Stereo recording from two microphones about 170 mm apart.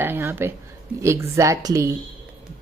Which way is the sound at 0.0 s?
15° right (ahead or behind).